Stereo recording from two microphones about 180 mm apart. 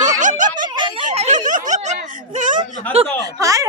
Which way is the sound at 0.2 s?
45° right (ahead or behind).